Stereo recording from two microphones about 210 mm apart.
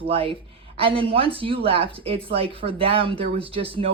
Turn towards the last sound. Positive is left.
turn(degrees=-25)  # may be behind; listen again after turning